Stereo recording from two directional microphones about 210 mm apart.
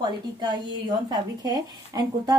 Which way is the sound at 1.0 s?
20° right (ahead or behind).